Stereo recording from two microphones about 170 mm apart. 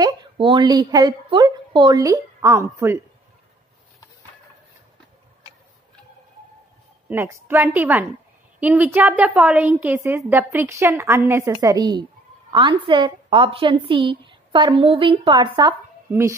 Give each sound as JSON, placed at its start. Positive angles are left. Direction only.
{"t": 0.0, "sound": "a woman's voice", "side_deg": -25}
{"t": 7.1, "sound": "a woman's voice", "side_deg": -15}
{"t": 16.1, "sound": "a woman's voice", "side_deg": -15}